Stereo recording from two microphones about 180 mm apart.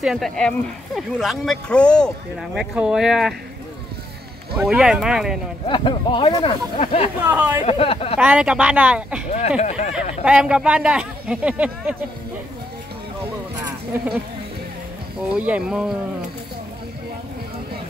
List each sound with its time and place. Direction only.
0.0 s speech: centre (ahead or behind)
4.6 s speech: 5° right (ahead or behind)
5.7 s speech: 25° left (ahead or behind)
7.2 s speech: 10° right (ahead or behind)
7.6 s speech: 30° left (ahead or behind)
8.2 s speech: 5° right (ahead or behind)
9.6 s speech: 40° left (ahead or behind)
10.2 s speech: 5° right (ahead or behind)
15.3 s speech: 5° right (ahead or behind)